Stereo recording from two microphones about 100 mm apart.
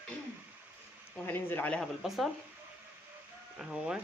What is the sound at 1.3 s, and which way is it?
Speech, 20° left (ahead or behind).